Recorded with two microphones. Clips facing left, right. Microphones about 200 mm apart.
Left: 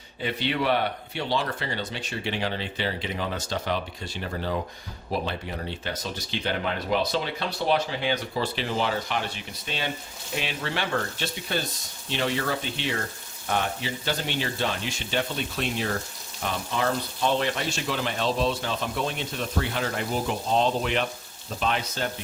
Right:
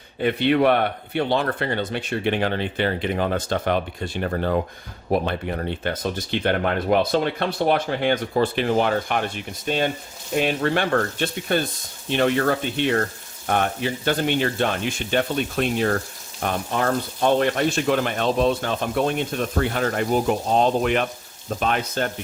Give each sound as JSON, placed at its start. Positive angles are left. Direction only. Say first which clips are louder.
{"t": 0.2, "sound": "speech", "louder": "right 9 dB", "side_deg": -55}